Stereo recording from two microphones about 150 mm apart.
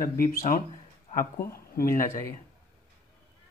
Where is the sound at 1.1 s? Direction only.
80° left.